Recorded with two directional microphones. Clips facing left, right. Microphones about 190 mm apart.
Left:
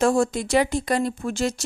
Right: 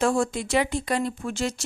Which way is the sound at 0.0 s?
40° left (ahead or behind).